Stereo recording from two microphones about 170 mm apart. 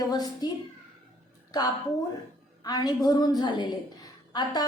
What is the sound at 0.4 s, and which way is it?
Speech, 25° left (ahead or behind).